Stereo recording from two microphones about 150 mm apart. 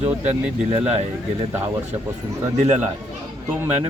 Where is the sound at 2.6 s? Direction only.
50° right (ahead or behind).